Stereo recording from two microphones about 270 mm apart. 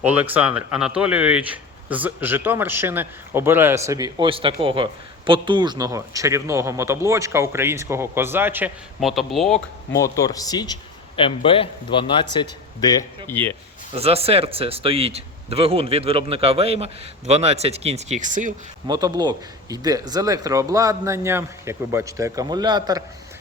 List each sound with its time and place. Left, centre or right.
0.0 s speech: centre
9.9 s a man's voice: centre
13.9 s a man's voice: right
18.9 s speech: centre